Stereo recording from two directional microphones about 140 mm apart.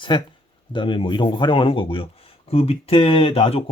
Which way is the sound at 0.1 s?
35° left (ahead or behind).